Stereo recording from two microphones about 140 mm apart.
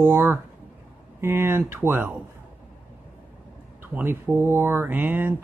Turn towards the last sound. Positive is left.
turn(degrees=-15)  # may be behind; listen again after turning